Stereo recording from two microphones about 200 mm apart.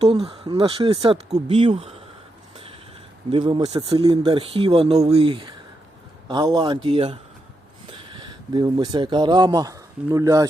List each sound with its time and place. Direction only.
0.0 s speech: 30° right (ahead or behind)
3.3 s speech: 25° right (ahead or behind)